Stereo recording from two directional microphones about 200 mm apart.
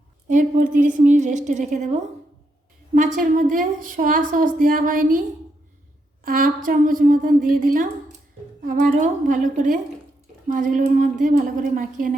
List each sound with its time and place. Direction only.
0.3 s a woman's voice: 40° right (ahead or behind)
3.2 s a woman's voice: 40° right (ahead or behind)
6.2 s a woman's voice: 45° right (ahead or behind)